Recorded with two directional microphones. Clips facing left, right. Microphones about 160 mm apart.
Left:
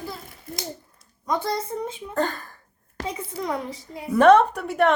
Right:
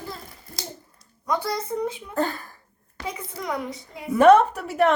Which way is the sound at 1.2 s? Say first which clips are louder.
Left 1 dB; 25° left (ahead or behind).